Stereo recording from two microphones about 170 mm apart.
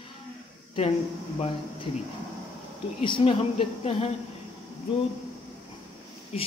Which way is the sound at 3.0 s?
35° left (ahead or behind).